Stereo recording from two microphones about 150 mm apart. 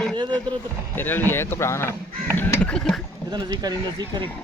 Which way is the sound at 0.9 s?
15° left (ahead or behind).